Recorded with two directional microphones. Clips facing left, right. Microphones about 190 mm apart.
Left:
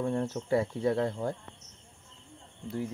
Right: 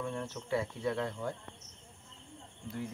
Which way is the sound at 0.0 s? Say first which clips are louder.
Left 8 dB; 35° left (ahead or behind).